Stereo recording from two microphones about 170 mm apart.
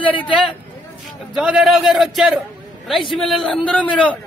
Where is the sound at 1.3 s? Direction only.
5° right (ahead or behind).